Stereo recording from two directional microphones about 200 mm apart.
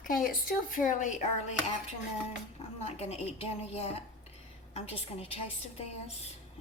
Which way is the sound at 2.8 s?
30° left (ahead or behind).